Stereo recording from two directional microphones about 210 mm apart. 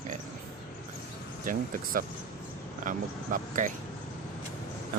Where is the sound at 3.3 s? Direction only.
40° right (ahead or behind).